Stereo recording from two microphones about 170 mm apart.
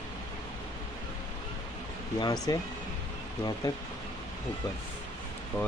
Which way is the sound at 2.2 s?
25° left (ahead or behind).